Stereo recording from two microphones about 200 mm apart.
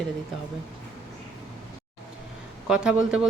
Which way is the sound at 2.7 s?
5° right (ahead or behind).